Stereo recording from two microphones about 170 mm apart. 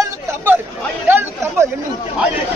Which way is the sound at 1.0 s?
10° right (ahead or behind).